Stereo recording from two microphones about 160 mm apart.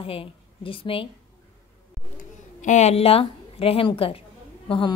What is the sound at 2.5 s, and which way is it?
A woman's voice, 45° left (ahead or behind).